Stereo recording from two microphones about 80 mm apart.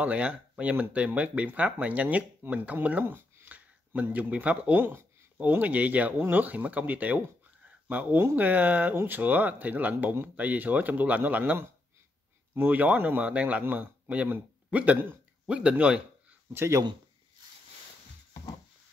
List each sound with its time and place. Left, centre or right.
0.0 s a man's voice: centre
16.5 s speech: right